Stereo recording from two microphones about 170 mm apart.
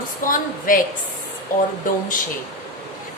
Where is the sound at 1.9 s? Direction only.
55° left (ahead or behind).